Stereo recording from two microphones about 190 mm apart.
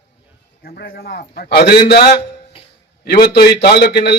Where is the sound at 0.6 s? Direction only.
55° left (ahead or behind).